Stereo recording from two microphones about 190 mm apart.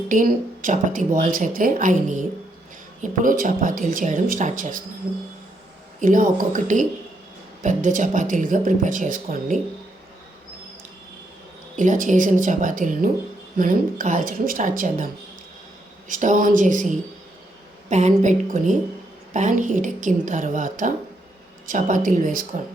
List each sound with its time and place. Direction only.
0.1 s speech: 45° right (ahead or behind)
6.0 s speech: 45° right (ahead or behind)
11.8 s a woman's voice: 45° right (ahead or behind)